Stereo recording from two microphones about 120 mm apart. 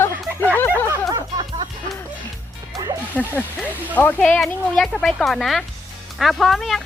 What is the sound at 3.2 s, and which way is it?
Speech, 10° left (ahead or behind).